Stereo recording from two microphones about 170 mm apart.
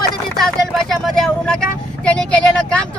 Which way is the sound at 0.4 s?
Centre (ahead or behind).